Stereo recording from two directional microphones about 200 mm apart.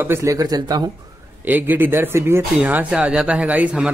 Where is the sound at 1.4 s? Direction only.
10° right (ahead or behind).